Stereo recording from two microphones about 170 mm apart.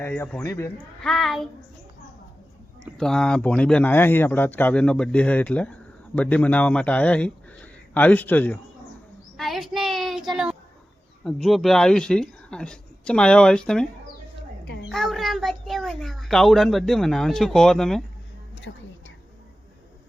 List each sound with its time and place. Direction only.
0.0 s speech: 10° left (ahead or behind)
1.0 s speech: centre (ahead or behind)
3.0 s speech: 5° left (ahead or behind)
9.4 s a woman's voice: centre (ahead or behind)
14.8 s a child's voice: centre (ahead or behind)
18.7 s a woman's voice: 90° left